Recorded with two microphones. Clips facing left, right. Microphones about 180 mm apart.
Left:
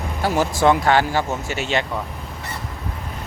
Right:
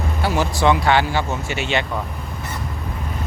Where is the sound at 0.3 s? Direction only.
45° left (ahead or behind).